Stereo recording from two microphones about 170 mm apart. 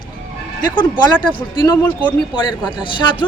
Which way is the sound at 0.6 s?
25° left (ahead or behind).